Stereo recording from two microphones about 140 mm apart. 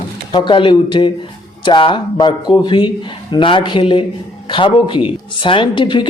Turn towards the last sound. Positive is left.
turn(degrees=35)  # may be behind; listen again after turning